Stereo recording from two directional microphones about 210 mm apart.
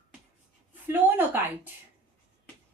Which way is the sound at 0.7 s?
10° right (ahead or behind).